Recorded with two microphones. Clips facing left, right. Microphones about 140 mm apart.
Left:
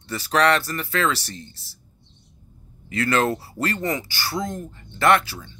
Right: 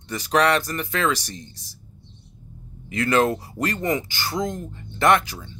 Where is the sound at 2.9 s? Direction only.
15° right (ahead or behind).